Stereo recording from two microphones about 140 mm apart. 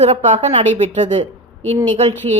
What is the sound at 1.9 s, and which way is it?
Speech, 50° right (ahead or behind).